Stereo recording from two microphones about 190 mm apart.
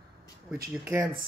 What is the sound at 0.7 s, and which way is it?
Speech, 10° right (ahead or behind).